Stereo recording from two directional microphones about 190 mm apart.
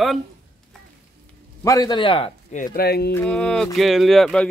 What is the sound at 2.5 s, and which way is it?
Speech, 50° left (ahead or behind).